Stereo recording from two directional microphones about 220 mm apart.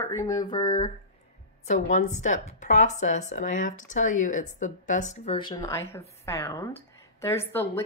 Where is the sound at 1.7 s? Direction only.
30° left (ahead or behind).